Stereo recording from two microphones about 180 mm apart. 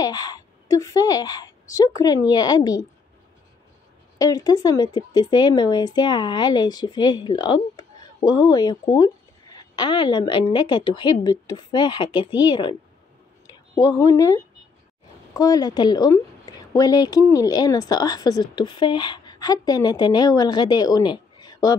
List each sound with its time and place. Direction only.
0.0 s a woman's voice: 20° left (ahead or behind)
4.2 s a woman's voice: 20° left (ahead or behind)